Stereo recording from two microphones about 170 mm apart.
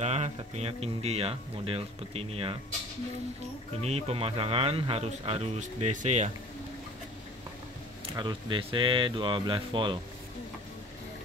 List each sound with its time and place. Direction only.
0.0 s speech: 40° right (ahead or behind)
3.8 s speech: 35° right (ahead or behind)
8.2 s speech: 30° right (ahead or behind)